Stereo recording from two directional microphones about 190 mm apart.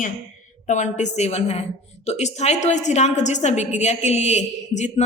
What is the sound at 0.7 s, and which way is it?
A woman's voice, 40° left (ahead or behind).